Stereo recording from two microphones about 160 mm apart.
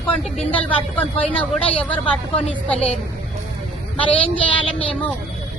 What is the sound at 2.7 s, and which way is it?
Speech, 40° left (ahead or behind).